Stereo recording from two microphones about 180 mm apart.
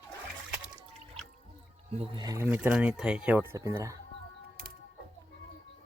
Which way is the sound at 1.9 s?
30° right (ahead or behind).